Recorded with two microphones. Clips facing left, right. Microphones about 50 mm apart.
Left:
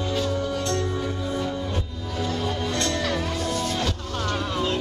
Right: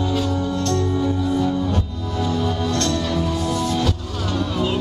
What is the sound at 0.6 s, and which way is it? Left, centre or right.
Music, centre.